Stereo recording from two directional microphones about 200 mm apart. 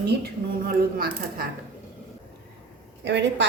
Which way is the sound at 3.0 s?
60° right (ahead or behind).